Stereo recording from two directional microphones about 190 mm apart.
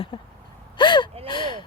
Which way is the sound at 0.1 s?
20° left (ahead or behind).